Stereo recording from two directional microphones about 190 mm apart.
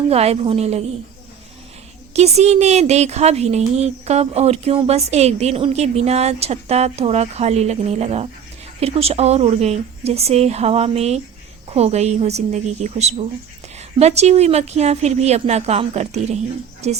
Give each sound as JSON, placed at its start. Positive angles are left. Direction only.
{"t": 0.1, "sound": "speech", "side_deg": -35}
{"t": 2.1, "sound": "speech", "side_deg": -35}